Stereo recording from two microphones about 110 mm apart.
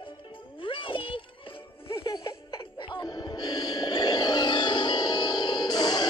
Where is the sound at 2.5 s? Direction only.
50° left (ahead or behind).